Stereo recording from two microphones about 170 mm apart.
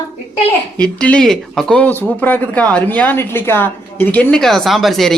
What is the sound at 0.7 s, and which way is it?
A woman's voice, 5° left (ahead or behind).